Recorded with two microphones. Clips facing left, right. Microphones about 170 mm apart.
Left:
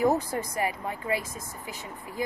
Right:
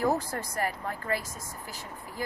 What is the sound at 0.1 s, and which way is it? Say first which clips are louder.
Speech: left 3 dB; 10° left (ahead or behind).